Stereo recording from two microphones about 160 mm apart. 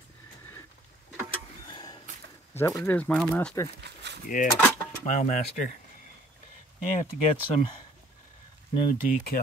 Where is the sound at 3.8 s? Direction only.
90° right.